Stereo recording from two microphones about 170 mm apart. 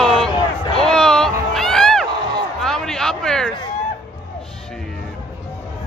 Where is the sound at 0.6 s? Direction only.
30° left (ahead or behind).